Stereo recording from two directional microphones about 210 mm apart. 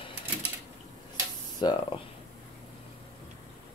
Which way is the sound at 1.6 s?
20° left (ahead or behind).